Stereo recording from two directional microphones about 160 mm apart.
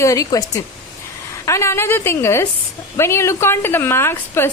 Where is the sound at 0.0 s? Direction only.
20° left (ahead or behind).